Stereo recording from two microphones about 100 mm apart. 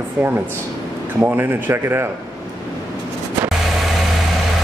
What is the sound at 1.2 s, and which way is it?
Speech, 25° right (ahead or behind).